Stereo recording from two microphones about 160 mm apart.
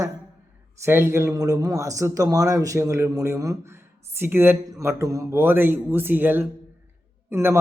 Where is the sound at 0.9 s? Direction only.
15° right (ahead or behind).